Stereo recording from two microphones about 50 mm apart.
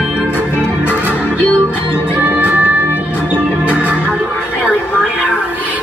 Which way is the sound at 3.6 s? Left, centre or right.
Right.